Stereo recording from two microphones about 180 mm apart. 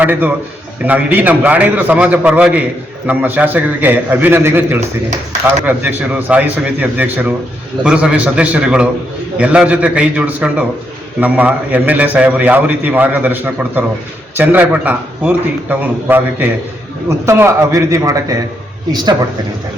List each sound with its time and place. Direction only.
0.0 s a man's voice: 10° right (ahead or behind)